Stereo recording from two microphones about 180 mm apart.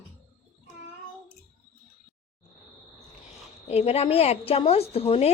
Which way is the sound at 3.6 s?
35° left (ahead or behind).